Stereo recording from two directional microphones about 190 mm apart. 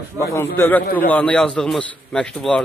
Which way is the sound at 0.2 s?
15° left (ahead or behind).